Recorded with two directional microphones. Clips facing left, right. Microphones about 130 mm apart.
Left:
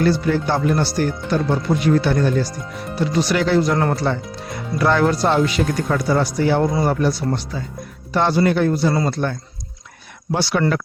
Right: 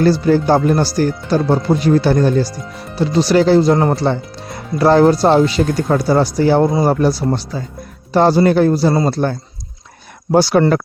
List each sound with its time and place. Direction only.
0.0 s speech: 35° right (ahead or behind)